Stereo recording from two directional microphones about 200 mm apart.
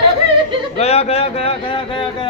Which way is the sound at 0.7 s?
30° left (ahead or behind).